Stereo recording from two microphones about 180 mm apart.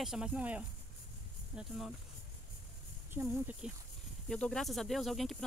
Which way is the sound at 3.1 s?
5° right (ahead or behind).